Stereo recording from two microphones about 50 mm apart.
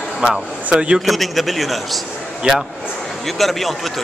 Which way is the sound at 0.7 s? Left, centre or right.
Centre.